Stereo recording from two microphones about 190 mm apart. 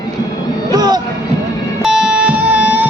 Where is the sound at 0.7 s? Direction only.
20° right (ahead or behind).